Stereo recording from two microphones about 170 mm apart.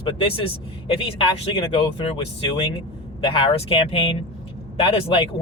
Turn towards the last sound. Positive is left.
turn(degrees=35)  # may be behind; listen again after turning